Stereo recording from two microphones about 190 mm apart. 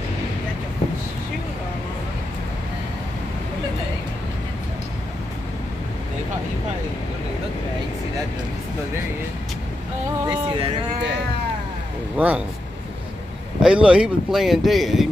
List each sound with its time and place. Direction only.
10.2 s a sound: 25° right (ahead or behind)
12.2 s speech: 5° right (ahead or behind)
13.6 s speech: 5° right (ahead or behind)